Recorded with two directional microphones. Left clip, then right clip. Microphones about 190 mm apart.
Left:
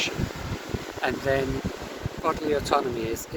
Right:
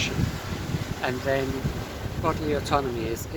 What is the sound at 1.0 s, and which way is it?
Speech, 20° left (ahead or behind).